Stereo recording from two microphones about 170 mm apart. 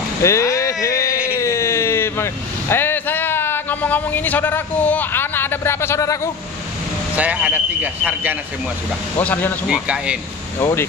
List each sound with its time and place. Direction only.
0.2 s a sound: 15° left (ahead or behind)
1.3 s vehicle: 15° left (ahead or behind)
7.2 s speech: 10° right (ahead or behind)
9.2 s speech: 10° left (ahead or behind)
9.7 s speech: 5° right (ahead or behind)
10.6 s speech: 15° left (ahead or behind)